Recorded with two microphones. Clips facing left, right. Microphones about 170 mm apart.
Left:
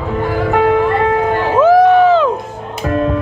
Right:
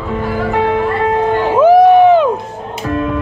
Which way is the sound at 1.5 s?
15° right (ahead or behind).